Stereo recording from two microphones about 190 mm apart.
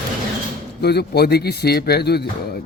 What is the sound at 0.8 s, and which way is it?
A man's voice, 60° left (ahead or behind).